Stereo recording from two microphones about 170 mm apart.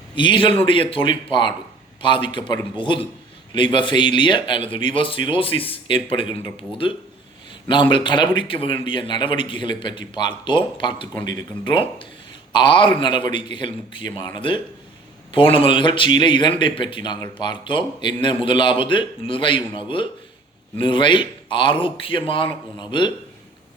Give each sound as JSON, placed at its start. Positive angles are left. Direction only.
{"t": 0.2, "sound": "a man's voice", "side_deg": 30}